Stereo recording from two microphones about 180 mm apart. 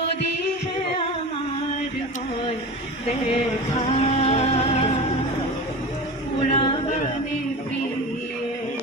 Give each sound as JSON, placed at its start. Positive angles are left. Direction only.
{"t": 3.3, "sound": "music", "side_deg": 35}
{"t": 6.5, "sound": "a capella", "side_deg": 30}